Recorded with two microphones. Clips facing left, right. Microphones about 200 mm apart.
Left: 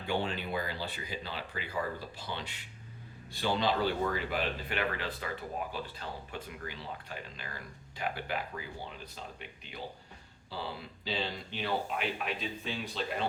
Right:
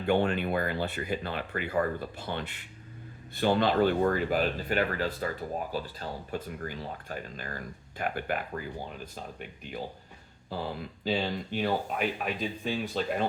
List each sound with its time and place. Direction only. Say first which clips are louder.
0.0 s speech: right 8 dB; 55° right (ahead or behind)